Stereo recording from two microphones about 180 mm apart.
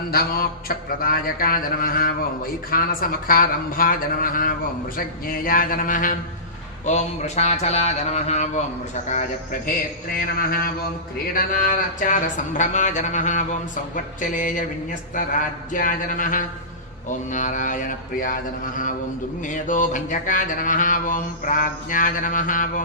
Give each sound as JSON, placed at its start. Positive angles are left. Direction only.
{"t": 0.1, "sound": "mantra", "side_deg": 55}
{"t": 6.8, "sound": "speech", "side_deg": 40}
{"t": 9.0, "sound": "mantra", "side_deg": 40}
{"t": 10.1, "sound": "a sound", "side_deg": 55}
{"t": 11.3, "sound": "mantra", "side_deg": 50}